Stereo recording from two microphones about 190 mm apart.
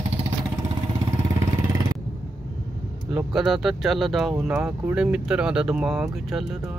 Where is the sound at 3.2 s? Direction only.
Centre (ahead or behind).